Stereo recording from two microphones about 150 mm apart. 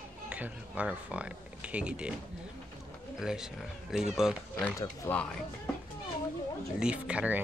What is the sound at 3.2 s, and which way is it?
Speech, 5° right (ahead or behind).